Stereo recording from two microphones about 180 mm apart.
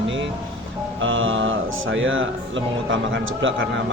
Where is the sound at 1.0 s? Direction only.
90° right.